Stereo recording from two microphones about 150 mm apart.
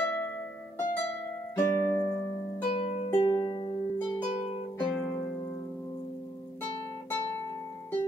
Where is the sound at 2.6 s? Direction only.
50° left (ahead or behind).